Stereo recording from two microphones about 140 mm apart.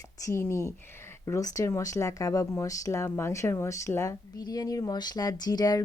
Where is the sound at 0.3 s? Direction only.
20° left (ahead or behind).